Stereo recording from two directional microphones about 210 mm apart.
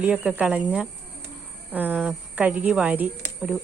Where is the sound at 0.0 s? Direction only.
5° right (ahead or behind).